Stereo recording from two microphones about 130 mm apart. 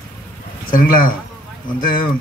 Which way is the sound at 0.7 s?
90° left.